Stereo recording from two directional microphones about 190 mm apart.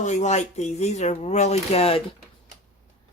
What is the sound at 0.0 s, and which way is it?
Speech, 40° left (ahead or behind).